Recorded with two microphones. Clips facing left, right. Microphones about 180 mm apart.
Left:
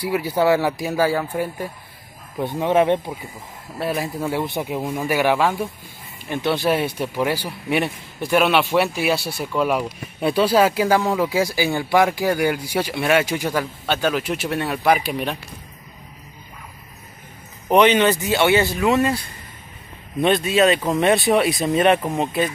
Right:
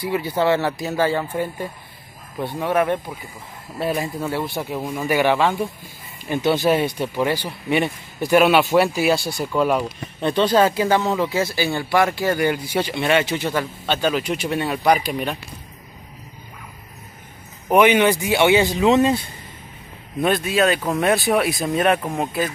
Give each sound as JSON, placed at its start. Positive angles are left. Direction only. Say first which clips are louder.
{"t": 0.0, "sound": "speech", "louder": "left 1 dB", "side_deg": 10}
{"t": 3.7, "sound": "speech", "louder": "right 1 dB", "side_deg": 0}
{"t": 4.3, "sound": "speech", "louder": "left 1 dB", "side_deg": 15}
{"t": 17.6, "sound": "speech", "louder": "even", "side_deg": -10}
{"t": 20.2, "sound": "speech", "louder": "left 2 dB", "side_deg": 0}